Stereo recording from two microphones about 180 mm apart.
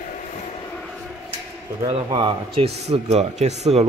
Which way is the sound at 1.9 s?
30° right (ahead or behind).